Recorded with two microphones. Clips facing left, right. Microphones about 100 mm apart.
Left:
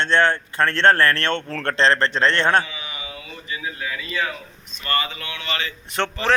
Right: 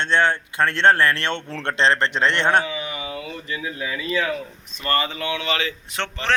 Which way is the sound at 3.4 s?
10° left (ahead or behind).